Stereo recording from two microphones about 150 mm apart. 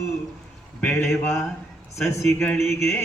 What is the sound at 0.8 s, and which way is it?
Chant, 15° left (ahead or behind).